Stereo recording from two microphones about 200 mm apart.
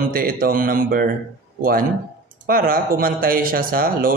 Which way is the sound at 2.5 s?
45° right (ahead or behind).